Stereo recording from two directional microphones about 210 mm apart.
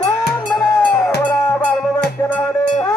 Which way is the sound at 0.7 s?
10° left (ahead or behind).